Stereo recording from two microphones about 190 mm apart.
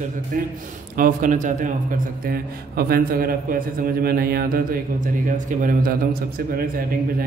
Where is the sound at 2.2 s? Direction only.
55° right (ahead or behind).